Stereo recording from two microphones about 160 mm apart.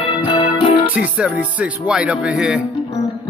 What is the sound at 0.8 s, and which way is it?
Speech, 10° right (ahead or behind).